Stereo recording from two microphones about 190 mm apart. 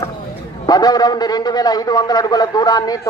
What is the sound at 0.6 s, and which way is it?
A man's voice, 20° left (ahead or behind).